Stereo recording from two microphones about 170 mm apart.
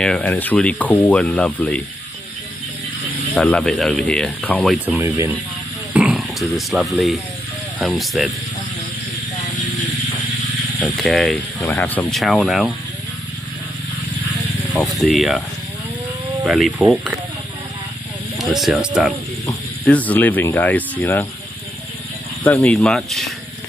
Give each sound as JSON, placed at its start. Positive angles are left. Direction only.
{"t": 0.0, "sound": "speech", "side_deg": 5}
{"t": 3.3, "sound": "speech", "side_deg": 5}
{"t": 4.8, "sound": "speech", "side_deg": -15}
{"t": 5.9, "sound": "a sound", "side_deg": -10}
{"t": 6.5, "sound": "speech", "side_deg": 0}
{"t": 10.8, "sound": "speech", "side_deg": 0}
{"t": 14.7, "sound": "speech", "side_deg": 0}
{"t": 16.4, "sound": "speech", "side_deg": -5}
{"t": 18.4, "sound": "speech", "side_deg": 0}
{"t": 19.4, "sound": "speech", "side_deg": 10}
{"t": 22.4, "sound": "speech", "side_deg": 10}